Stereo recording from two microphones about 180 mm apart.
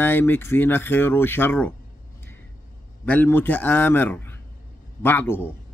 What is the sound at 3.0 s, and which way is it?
Speech, 10° left (ahead or behind).